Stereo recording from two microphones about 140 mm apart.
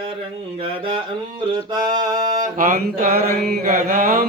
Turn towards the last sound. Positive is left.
turn(degrees=-80)